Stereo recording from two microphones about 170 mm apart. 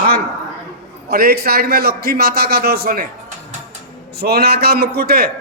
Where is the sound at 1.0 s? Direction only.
65° right (ahead or behind).